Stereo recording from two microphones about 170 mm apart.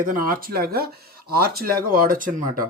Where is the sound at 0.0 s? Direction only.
55° right (ahead or behind).